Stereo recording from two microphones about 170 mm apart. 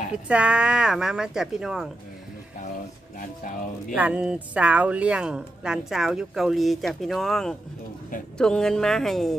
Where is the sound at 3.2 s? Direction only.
50° left (ahead or behind).